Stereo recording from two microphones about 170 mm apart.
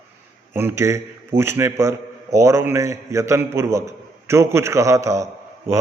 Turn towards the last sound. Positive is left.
turn(degrees=-15)  # may be behind; listen again after turning